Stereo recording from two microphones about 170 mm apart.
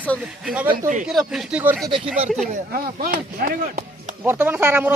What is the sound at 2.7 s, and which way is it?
Speech, 60° right (ahead or behind).